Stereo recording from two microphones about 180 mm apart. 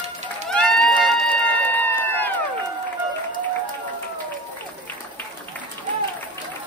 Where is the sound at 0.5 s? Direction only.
5° left (ahead or behind).